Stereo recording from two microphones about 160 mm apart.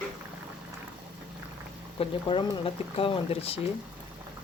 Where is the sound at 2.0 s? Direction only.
35° left (ahead or behind).